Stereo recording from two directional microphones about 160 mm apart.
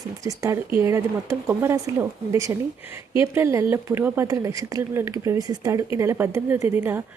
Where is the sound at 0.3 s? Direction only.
20° right (ahead or behind).